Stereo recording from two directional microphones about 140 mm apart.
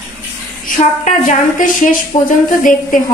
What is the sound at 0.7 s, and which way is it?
A woman's voice, 60° left (ahead or behind).